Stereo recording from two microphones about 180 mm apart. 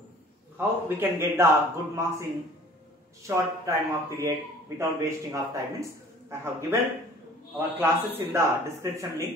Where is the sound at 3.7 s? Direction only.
15° right (ahead or behind).